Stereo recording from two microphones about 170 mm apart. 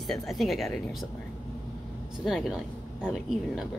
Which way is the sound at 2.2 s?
Centre (ahead or behind).